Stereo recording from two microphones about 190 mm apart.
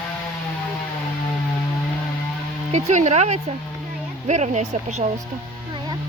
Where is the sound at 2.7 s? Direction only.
35° right (ahead or behind).